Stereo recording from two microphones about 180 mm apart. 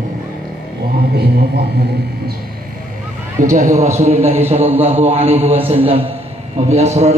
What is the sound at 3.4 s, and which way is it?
Speech, 45° right (ahead or behind).